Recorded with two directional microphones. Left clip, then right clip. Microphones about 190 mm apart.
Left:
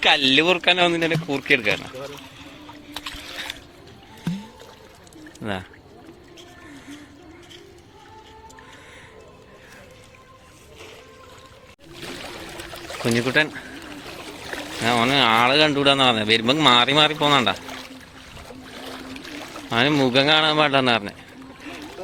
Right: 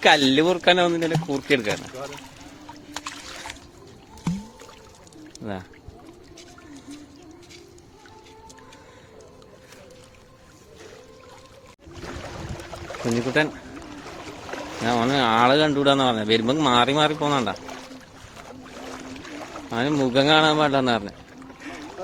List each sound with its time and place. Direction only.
0.0 s a man's voice: 20° right (ahead or behind)
2.9 s a sound: 5° right (ahead or behind)
5.4 s speech: 10° right (ahead or behind)
12.9 s speech: 5° right (ahead or behind)
14.5 s a sound: centre (ahead or behind)
14.9 s a man's voice: 15° right (ahead or behind)
18.6 s boat: 10° left (ahead or behind)
19.2 s speech: centre (ahead or behind)